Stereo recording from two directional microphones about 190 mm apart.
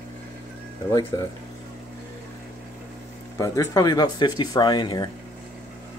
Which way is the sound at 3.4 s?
15° left (ahead or behind).